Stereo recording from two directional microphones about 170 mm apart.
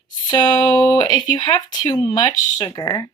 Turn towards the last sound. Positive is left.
turn(degrees=20)  # may be behind; listen again after turning